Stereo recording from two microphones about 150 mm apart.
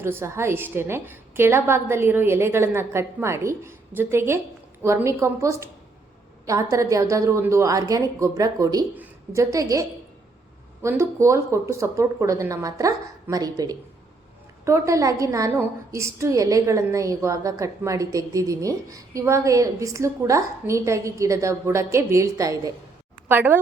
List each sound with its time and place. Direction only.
0.0 s a woman's voice: 15° right (ahead or behind)
10.8 s a woman's voice: 20° right (ahead or behind)
23.3 s a woman's voice: 10° right (ahead or behind)